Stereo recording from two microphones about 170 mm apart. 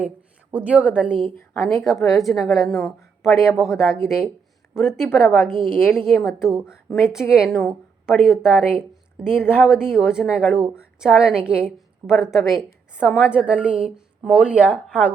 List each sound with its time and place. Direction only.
0.5 s a woman's voice: 10° right (ahead or behind)
1.5 s a woman's voice: 15° left (ahead or behind)
2.2 s a woman's voice: centre (ahead or behind)
2.6 s speech: 15° left (ahead or behind)
3.5 s a woman's voice: 5° right (ahead or behind)
3.8 s a woman's voice: 15° left (ahead or behind)
6.4 s a woman's voice: 5° right (ahead or behind)
9.4 s a woman's voice: 10° left (ahead or behind)
9.6 s a woman's voice: 5° right (ahead or behind)